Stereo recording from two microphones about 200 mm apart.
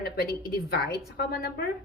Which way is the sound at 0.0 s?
50° left (ahead or behind).